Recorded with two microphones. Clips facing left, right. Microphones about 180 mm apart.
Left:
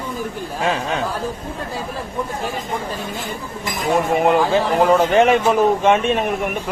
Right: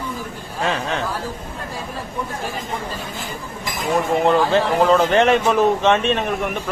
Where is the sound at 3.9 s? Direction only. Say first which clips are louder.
Left 1 dB; 15° left (ahead or behind).